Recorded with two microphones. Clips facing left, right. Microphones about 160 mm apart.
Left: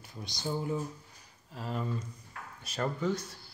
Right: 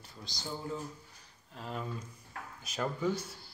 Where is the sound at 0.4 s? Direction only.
15° left (ahead or behind).